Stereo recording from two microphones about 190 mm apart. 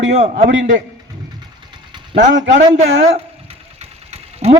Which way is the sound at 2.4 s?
70° right (ahead or behind).